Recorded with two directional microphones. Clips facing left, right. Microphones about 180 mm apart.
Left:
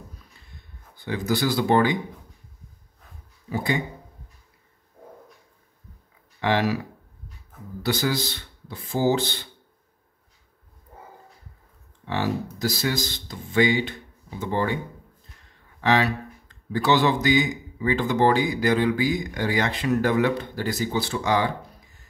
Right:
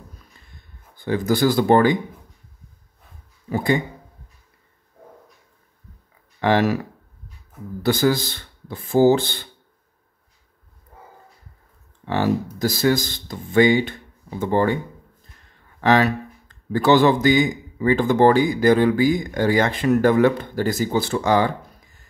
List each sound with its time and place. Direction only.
0.9 s a man's voice: 50° right (ahead or behind)
3.4 s speech: 50° right (ahead or behind)
6.4 s a man's voice: 45° right (ahead or behind)
7.8 s a man's voice: 50° right (ahead or behind)
12.1 s a man's voice: 50° right (ahead or behind)
15.8 s a man's voice: 50° right (ahead or behind)